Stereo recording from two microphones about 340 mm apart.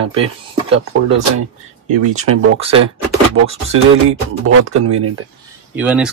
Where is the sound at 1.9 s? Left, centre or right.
Right.